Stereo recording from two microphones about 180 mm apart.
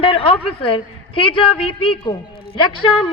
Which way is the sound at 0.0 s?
30° left (ahead or behind).